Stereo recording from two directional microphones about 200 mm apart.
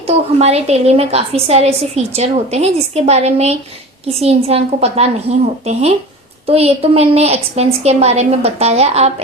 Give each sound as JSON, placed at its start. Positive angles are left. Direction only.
{"t": 0.1, "sound": "a woman's voice", "side_deg": -30}